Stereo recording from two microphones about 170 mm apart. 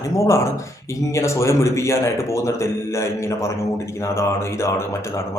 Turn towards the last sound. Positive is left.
turn(degrees=15)  # may be behind; listen again after turning